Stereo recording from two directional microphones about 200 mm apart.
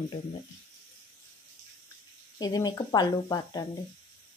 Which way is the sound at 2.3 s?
20° left (ahead or behind).